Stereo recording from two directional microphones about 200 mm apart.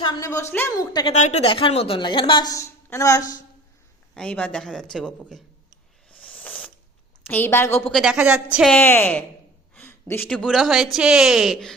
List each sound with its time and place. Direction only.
0.0 s a woman's voice: 20° left (ahead or behind)
1.1 s a woman's voice: 35° left (ahead or behind); by 3.4 s 15° left (ahead or behind)
4.1 s a woman's voice: 5° left (ahead or behind)
6.1 s a sound: 5° left (ahead or behind)
7.3 s a woman's voice: 10° left (ahead or behind)